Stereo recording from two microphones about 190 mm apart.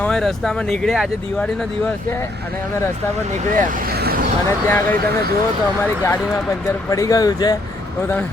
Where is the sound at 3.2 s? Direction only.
40° right (ahead or behind).